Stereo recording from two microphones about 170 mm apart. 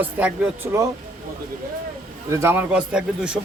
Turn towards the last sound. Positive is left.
turn(degrees=-5)  # may be behind; listen again after turning